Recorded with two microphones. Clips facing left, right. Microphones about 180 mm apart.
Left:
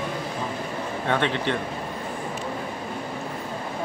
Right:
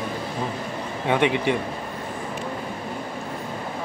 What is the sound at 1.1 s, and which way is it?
Speech, 15° right (ahead or behind).